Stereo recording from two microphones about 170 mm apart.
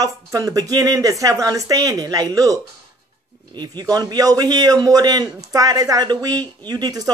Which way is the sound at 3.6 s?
25° right (ahead or behind).